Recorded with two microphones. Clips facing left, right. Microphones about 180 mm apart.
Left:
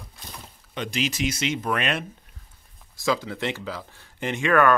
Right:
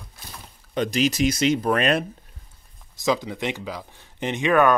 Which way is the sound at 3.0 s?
20° right (ahead or behind).